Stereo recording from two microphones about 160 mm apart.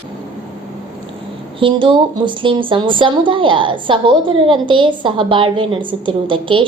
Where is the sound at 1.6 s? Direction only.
30° right (ahead or behind).